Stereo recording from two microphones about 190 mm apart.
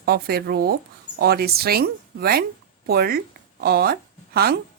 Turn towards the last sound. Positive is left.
turn(degrees=-55)  # may be behind; listen again after turning